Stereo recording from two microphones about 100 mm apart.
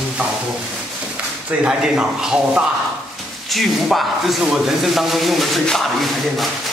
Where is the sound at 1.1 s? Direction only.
10° right (ahead or behind).